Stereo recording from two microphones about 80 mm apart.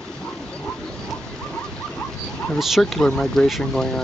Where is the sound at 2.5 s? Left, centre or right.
Centre.